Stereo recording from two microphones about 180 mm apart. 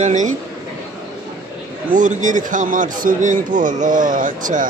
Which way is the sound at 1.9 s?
45° right (ahead or behind).